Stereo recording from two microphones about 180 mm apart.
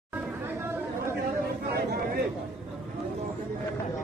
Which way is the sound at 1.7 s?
60° right (ahead or behind).